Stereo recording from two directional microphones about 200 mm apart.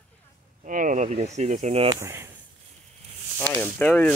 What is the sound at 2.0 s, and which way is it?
Speech, 10° right (ahead or behind).